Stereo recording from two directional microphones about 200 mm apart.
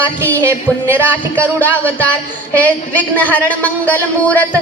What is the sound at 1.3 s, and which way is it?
A woman's voice, 5° left (ahead or behind).